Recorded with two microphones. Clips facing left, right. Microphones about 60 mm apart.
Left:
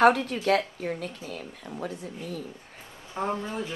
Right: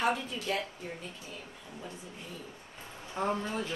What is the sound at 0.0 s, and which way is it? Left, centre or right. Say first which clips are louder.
Speech: left 11 dB; left.